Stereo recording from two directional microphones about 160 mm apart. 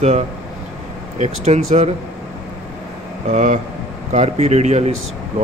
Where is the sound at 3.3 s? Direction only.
50° right (ahead or behind).